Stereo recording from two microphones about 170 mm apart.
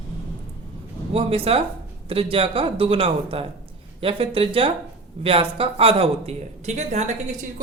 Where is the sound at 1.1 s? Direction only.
35° right (ahead or behind).